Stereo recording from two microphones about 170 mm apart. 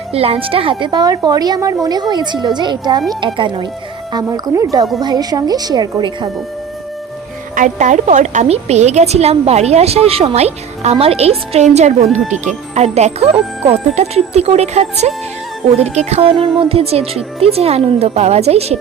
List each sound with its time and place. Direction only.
0.1 s a woman's voice: 35° right (ahead or behind)
7.5 s a woman's voice: 45° right (ahead or behind)